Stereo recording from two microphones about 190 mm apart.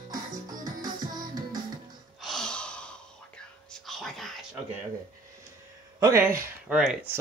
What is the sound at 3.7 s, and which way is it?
Whispering, centre (ahead or behind).